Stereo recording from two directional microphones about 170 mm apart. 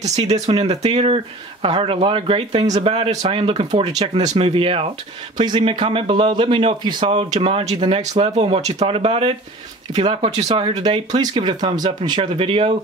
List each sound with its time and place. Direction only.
0.0 s a man's voice: 40° right (ahead or behind)